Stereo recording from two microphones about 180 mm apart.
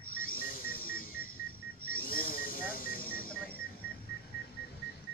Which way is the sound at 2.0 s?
50° left (ahead or behind).